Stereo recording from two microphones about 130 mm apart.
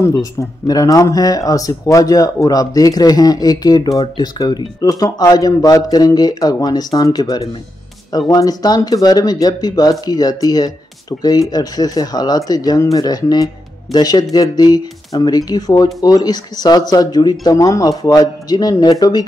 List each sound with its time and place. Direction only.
0.0 s speech: 25° left (ahead or behind)